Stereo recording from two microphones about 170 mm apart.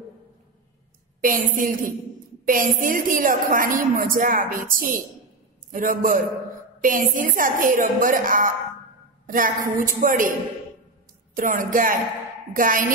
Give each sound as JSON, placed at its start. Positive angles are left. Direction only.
{"t": 1.2, "sound": "a woman's voice", "side_deg": -55}
{"t": 11.3, "sound": "a woman's voice", "side_deg": -50}